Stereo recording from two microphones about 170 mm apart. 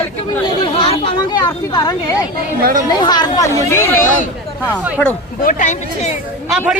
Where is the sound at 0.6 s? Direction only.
30° left (ahead or behind); by 3.9 s 15° left (ahead or behind).